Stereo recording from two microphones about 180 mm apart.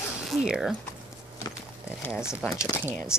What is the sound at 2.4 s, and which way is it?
Speech, 5° right (ahead or behind).